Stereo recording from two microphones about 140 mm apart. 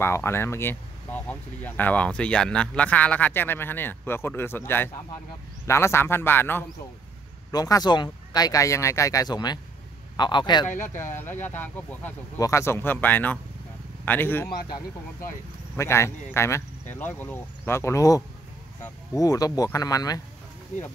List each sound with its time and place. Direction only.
0.0 s speech: 20° left (ahead or behind)
7.5 s a man's voice: 25° left (ahead or behind)
10.7 s speech: 65° left (ahead or behind)
11.0 s speech: 15° left (ahead or behind)
15.7 s speech: 20° left (ahead or behind)